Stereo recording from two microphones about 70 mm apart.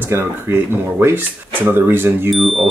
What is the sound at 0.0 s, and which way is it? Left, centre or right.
Speech, right.